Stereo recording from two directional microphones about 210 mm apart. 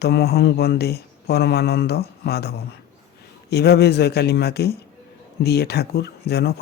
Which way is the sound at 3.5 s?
50° left (ahead or behind).